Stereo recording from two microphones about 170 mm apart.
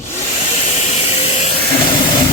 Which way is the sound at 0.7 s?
40° left (ahead or behind).